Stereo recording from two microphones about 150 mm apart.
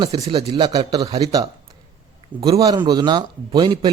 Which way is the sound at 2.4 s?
30° right (ahead or behind).